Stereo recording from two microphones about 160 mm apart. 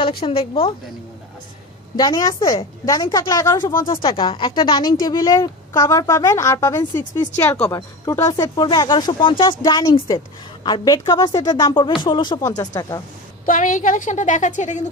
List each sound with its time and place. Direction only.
0.2 s a woman's voice: 35° left (ahead or behind)
2.0 s speech: 25° left (ahead or behind)
13.5 s a woman's voice: 55° left (ahead or behind)